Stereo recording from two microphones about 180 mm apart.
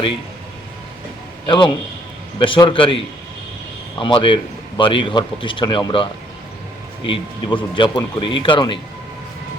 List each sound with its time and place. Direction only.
1.5 s a man's voice: 25° left (ahead or behind)
4.0 s a man's voice: 25° left (ahead or behind)